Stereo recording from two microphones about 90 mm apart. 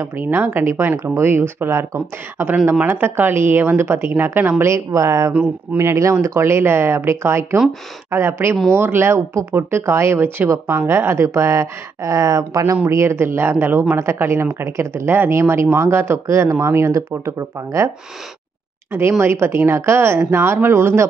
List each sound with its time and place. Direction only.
0.0 s speech: 30° right (ahead or behind)